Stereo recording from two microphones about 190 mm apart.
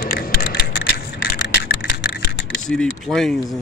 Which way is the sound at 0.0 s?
55° left (ahead or behind).